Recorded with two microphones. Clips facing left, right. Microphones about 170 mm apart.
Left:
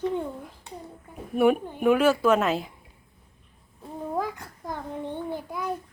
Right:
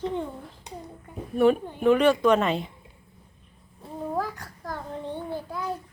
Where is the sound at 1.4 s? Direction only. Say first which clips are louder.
Even; 10° left (ahead or behind).